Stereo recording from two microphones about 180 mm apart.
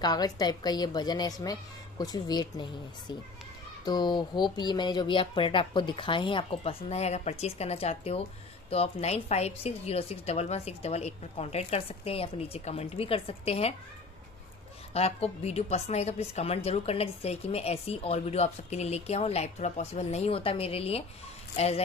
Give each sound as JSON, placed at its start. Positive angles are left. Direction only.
{"t": 0.0, "sound": "a woman's voice", "side_deg": 25}
{"t": 15.0, "sound": "speech", "side_deg": 35}